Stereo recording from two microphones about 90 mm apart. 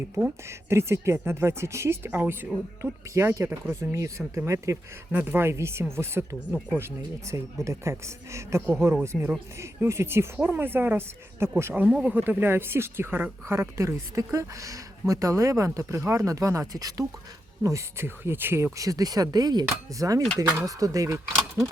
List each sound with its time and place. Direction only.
0.4 s speech: 30° right (ahead or behind)
5.1 s speech: 20° right (ahead or behind)
11.7 s speech: 10° right (ahead or behind); by 19.6 s 50° right (ahead or behind)
19.9 s speech: 40° right (ahead or behind)